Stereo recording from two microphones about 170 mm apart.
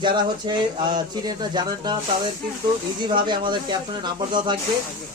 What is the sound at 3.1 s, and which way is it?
A man's voice, 25° right (ahead or behind).